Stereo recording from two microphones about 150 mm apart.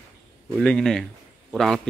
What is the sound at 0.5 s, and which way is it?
A man's voice, 5° left (ahead or behind).